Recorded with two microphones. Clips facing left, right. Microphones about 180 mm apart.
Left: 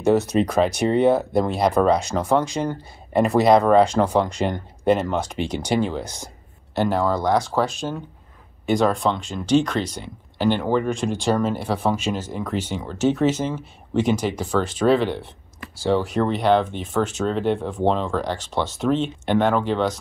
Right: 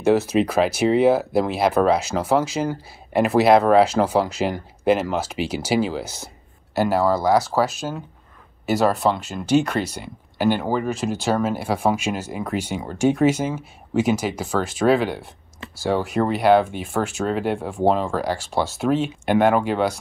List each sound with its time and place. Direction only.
0.0 s speech: centre (ahead or behind)